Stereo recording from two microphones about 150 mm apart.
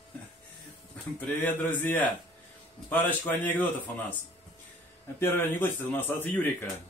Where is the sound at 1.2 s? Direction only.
10° left (ahead or behind).